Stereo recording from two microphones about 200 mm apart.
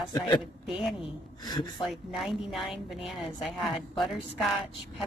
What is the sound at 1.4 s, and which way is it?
Speech, 20° left (ahead or behind).